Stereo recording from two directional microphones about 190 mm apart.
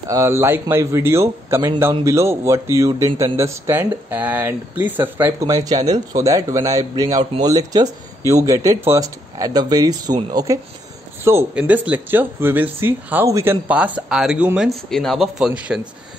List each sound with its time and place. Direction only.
0.1 s a man's voice: 15° right (ahead or behind)